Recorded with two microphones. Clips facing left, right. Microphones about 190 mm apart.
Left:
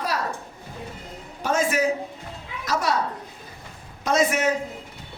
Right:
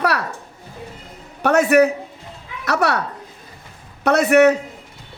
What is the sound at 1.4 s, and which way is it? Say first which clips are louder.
A man's voice: right 8 dB; 65° right (ahead or behind).